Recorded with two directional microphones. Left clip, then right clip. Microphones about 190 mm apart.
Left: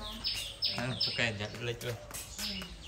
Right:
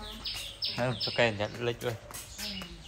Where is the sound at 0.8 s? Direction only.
Centre (ahead or behind).